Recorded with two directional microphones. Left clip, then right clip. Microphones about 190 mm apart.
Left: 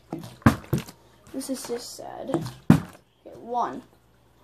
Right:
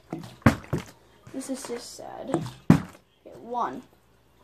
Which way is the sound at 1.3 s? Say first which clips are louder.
Left 2 dB; 5° left (ahead or behind).